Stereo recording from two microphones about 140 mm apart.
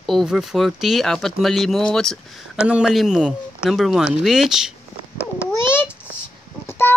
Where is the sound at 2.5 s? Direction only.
10° right (ahead or behind).